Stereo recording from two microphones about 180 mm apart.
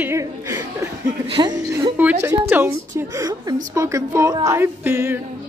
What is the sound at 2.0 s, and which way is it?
A woman's voice, 10° right (ahead or behind).